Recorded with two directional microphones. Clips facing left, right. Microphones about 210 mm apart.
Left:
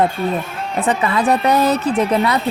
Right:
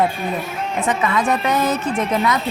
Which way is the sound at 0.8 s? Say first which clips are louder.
Left 3 dB; 35° left (ahead or behind).